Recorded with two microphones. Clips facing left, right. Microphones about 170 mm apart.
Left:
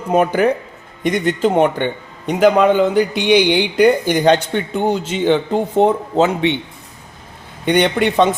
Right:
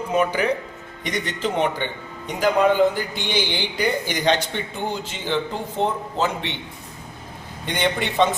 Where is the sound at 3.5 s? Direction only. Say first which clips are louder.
Left 11 dB; 60° left (ahead or behind).